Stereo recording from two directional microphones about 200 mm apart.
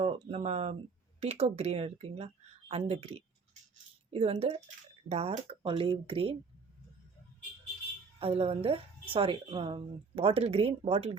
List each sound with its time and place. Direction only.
0.0 s speech: 30° right (ahead or behind)
8.2 s speech: 30° right (ahead or behind)